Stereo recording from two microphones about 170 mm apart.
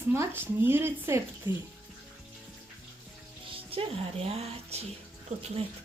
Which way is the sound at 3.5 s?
35° right (ahead or behind).